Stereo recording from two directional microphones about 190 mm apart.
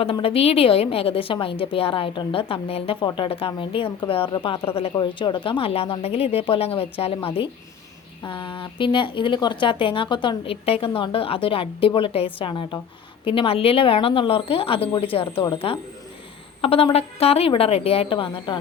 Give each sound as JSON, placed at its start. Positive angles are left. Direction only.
{"t": 0.0, "sound": "a woman's voice", "side_deg": 30}